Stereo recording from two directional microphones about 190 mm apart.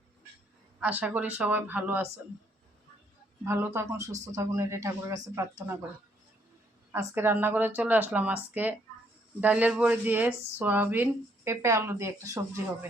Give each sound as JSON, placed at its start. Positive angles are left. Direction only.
{"t": 0.8, "sound": "speech", "side_deg": -10}
{"t": 3.4, "sound": "speech", "side_deg": -15}
{"t": 6.9, "sound": "speech", "side_deg": -10}